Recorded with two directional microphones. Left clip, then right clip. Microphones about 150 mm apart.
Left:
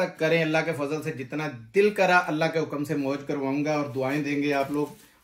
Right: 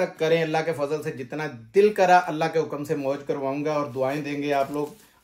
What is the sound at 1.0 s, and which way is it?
Speech, 50° right (ahead or behind).